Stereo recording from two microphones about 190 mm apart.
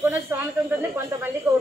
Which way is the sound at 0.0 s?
10° right (ahead or behind).